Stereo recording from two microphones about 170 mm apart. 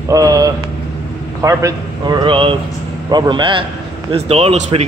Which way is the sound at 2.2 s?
30° right (ahead or behind).